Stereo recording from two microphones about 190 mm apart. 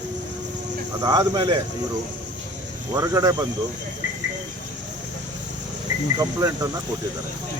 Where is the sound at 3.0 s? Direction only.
15° right (ahead or behind).